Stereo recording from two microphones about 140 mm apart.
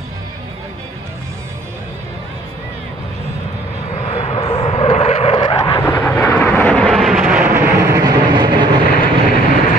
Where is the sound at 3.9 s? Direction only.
45° left (ahead or behind).